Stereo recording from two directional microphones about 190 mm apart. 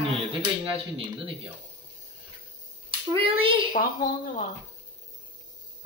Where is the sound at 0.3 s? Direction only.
25° right (ahead or behind).